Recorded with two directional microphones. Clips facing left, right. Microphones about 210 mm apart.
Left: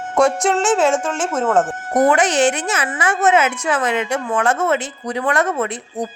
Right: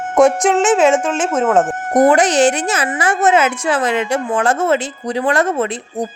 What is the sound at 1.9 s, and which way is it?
Speech, 35° right (ahead or behind).